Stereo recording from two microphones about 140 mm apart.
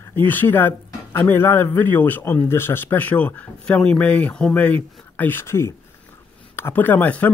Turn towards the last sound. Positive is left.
turn(degrees=10)  # may be behind; listen again after turning